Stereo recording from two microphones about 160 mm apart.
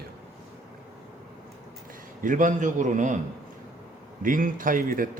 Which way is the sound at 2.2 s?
55° right (ahead or behind).